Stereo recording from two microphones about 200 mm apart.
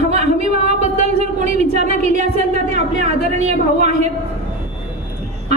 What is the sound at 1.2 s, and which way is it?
A woman's voice, 35° right (ahead or behind).